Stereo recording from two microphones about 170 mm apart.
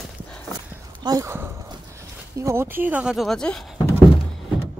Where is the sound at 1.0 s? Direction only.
20° right (ahead or behind).